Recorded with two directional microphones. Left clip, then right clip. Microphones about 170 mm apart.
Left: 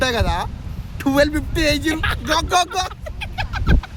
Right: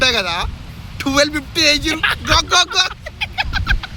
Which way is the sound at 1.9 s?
5° right (ahead or behind).